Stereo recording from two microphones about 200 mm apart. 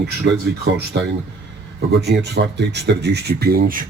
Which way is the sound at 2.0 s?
55° right (ahead or behind).